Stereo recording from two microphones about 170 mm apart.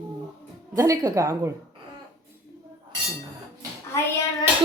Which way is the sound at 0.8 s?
15° right (ahead or behind).